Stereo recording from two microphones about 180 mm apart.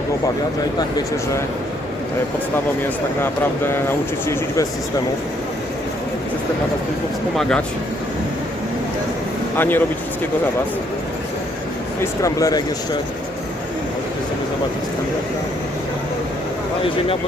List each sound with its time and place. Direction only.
0.8 s speech: 20° left (ahead or behind)
3.7 s speech: 15° left (ahead or behind)
7.3 s speech: 5° left (ahead or behind)
9.6 s speech: 10° left (ahead or behind)
12.2 s speech: 20° left (ahead or behind)